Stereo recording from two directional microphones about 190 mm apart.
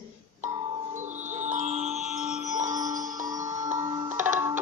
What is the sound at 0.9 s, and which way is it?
Music, 40° right (ahead or behind).